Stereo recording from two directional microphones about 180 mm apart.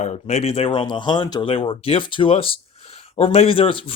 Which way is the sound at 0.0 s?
40° left (ahead or behind).